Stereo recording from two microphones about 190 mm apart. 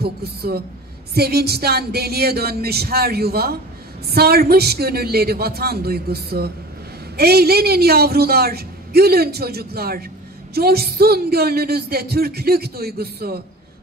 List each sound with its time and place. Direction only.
0.0 s speech: 55° right (ahead or behind)